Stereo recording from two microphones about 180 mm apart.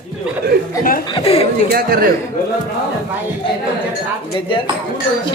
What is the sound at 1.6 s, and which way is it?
Speech, 55° right (ahead or behind).